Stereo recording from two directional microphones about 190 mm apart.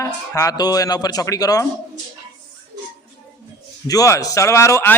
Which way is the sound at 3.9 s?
20° left (ahead or behind).